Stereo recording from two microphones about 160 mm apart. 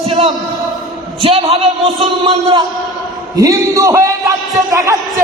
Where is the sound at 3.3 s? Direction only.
20° right (ahead or behind).